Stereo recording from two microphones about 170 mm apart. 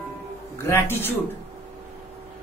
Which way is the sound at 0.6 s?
15° left (ahead or behind).